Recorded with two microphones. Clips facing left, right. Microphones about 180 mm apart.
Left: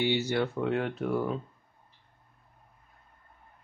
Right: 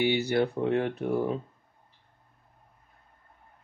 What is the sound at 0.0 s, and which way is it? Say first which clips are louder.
Speech: right 2 dB; 15° right (ahead or behind).